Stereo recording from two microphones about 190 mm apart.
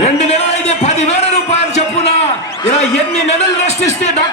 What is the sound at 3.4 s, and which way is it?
Speech, 35° left (ahead or behind).